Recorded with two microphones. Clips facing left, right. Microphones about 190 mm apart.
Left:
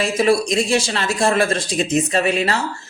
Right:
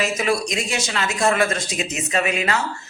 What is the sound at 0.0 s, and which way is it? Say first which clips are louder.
A man's voice: left 5 dB; 30° left (ahead or behind).